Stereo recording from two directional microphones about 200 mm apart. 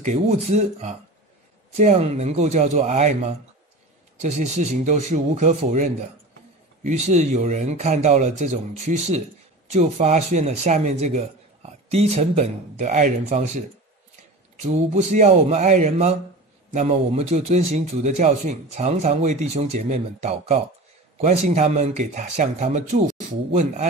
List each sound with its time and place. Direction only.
0.0 s speech: 35° right (ahead or behind)